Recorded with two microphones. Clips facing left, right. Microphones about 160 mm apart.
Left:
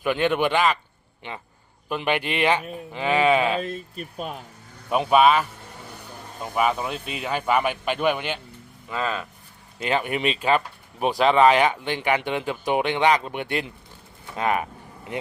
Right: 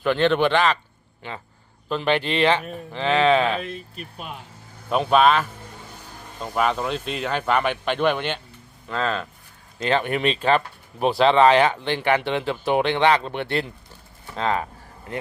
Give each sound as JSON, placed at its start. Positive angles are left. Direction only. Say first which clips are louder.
{"t": 0.0, "sound": "speech", "louder": "right 3 dB", "side_deg": 10}
{"t": 1.9, "sound": "speech", "louder": "right 3 dB", "side_deg": 10}
{"t": 3.6, "sound": "speech", "louder": "left 2 dB", "side_deg": 40}
{"t": 4.9, "sound": "speech", "louder": "even", "side_deg": 10}
{"t": 11.3, "sound": "speech", "louder": "right 1 dB", "side_deg": 10}